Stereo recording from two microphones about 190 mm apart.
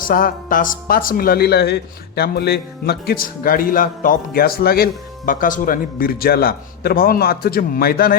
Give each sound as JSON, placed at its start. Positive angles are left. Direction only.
{"t": 0.1, "sound": "speech", "side_deg": 45}